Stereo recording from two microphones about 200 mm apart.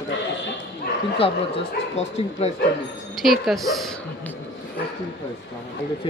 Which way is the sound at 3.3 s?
Centre (ahead or behind).